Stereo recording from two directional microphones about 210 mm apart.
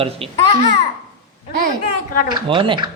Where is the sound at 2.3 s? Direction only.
25° right (ahead or behind).